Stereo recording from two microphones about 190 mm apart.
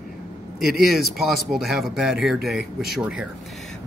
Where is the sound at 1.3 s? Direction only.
Centre (ahead or behind).